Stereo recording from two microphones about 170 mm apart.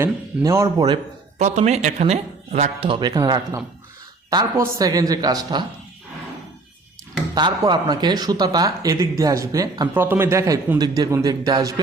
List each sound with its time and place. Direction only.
0.0 s a man's voice: 15° right (ahead or behind)
1.4 s a man's voice: 45° right (ahead or behind); by 5.6 s 25° right (ahead or behind)
7.3 s a man's voice: 25° right (ahead or behind)